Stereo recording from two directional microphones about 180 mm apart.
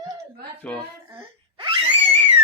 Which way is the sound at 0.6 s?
10° left (ahead or behind).